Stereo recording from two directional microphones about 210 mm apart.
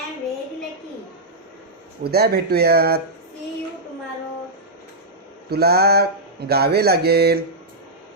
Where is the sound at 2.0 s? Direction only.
50° right (ahead or behind).